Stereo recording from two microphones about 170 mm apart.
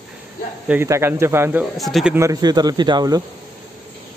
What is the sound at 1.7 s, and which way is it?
Speech, centre (ahead or behind).